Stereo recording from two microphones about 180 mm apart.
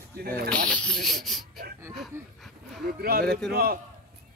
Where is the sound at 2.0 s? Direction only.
Centre (ahead or behind).